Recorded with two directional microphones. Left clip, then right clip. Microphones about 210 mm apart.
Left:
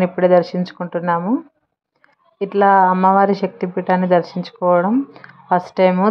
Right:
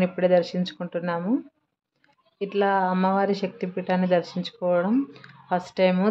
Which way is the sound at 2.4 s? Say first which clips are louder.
Left 10 dB; 15° left (ahead or behind).